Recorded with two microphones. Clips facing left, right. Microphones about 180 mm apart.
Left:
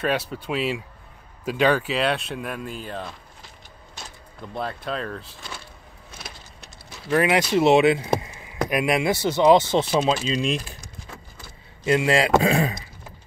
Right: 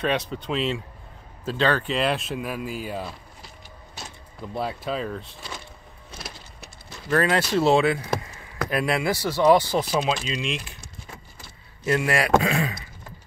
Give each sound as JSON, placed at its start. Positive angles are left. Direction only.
{"t": 0.0, "sound": "speech", "side_deg": 5}
{"t": 4.6, "sound": "speech", "side_deg": -5}
{"t": 6.1, "sound": "wood", "side_deg": 0}
{"t": 7.1, "sound": "speech", "side_deg": 15}
{"t": 10.2, "sound": "speech", "side_deg": 35}
{"t": 11.8, "sound": "a man's voice", "side_deg": 20}